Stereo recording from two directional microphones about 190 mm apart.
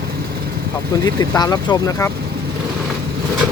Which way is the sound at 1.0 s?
20° left (ahead or behind).